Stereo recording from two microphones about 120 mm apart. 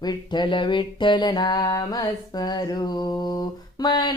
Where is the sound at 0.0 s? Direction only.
35° left (ahead or behind).